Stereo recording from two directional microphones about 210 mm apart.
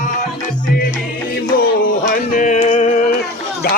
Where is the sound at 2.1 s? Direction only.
35° left (ahead or behind).